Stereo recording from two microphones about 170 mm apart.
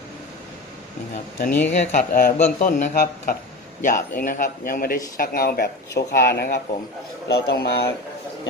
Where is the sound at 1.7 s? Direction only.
55° left (ahead or behind).